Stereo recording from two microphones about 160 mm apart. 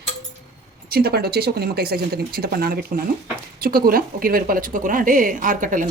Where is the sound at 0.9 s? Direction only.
70° right (ahead or behind).